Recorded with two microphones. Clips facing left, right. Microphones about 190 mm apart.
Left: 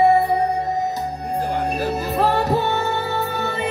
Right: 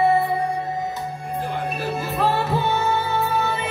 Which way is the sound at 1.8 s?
40° left (ahead or behind).